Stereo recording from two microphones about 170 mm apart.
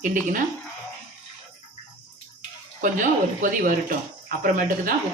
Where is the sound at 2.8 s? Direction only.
50° right (ahead or behind).